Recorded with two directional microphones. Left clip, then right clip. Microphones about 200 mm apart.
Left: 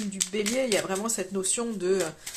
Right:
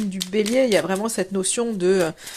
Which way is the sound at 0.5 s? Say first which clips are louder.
Right 9 dB; 40° right (ahead or behind).